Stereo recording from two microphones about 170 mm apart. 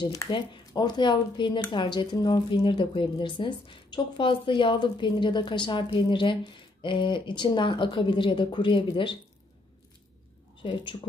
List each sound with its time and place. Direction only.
0.0 s speech: 20° left (ahead or behind)
10.6 s speech: 30° left (ahead or behind)